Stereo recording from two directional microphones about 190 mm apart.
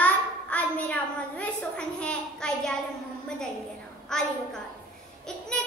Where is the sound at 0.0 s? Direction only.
5° left (ahead or behind).